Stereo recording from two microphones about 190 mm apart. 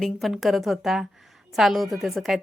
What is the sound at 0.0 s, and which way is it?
A woman's voice, centre (ahead or behind).